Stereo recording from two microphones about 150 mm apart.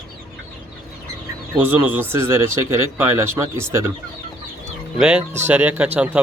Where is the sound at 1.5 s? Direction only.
10° right (ahead or behind).